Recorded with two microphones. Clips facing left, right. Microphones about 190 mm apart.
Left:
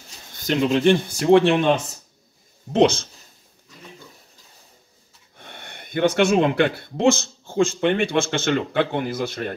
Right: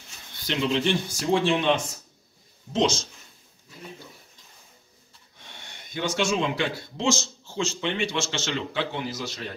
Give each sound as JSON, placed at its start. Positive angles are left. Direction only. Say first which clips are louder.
{"t": 0.3, "sound": "speech", "louder": "left 6 dB", "side_deg": 45}
{"t": 2.7, "sound": "speech", "louder": "left 7 dB", "side_deg": 60}
{"t": 5.4, "sound": "speech", "louder": "left 6 dB", "side_deg": 55}